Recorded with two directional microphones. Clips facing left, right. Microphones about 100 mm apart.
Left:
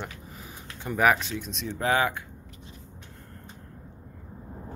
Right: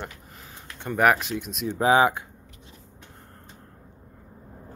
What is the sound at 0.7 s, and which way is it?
Speech, centre (ahead or behind).